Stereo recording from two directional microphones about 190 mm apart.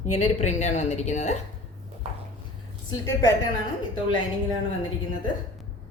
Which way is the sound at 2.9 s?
20° left (ahead or behind).